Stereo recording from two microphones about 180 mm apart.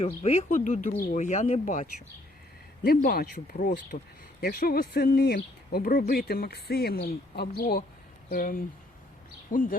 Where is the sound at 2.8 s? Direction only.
55° left (ahead or behind).